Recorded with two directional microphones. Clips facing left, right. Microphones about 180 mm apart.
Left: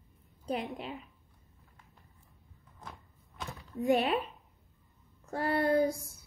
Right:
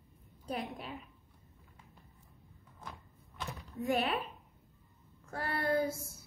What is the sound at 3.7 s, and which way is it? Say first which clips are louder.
Child singing: left 5 dB; 30° left (ahead or behind).